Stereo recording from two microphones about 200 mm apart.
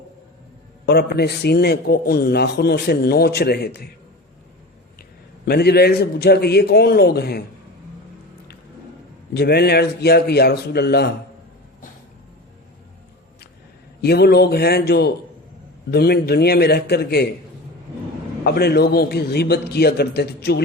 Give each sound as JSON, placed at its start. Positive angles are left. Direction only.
{"t": 0.9, "sound": "a man's voice", "side_deg": 55}
{"t": 5.5, "sound": "a man's voice", "side_deg": 50}
{"t": 9.3, "sound": "a man's voice", "side_deg": 55}
{"t": 14.0, "sound": "a man's voice", "side_deg": 55}
{"t": 18.4, "sound": "a man's voice", "side_deg": 55}